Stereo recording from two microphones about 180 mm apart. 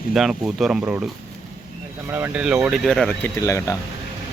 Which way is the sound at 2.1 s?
10° right (ahead or behind).